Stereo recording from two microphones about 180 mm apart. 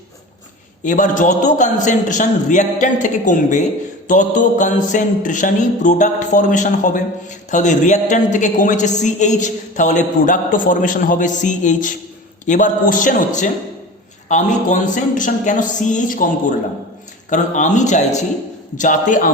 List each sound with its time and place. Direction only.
0.9 s a woman's voice: 45° left (ahead or behind)
17.2 s a woman's voice: 45° left (ahead or behind)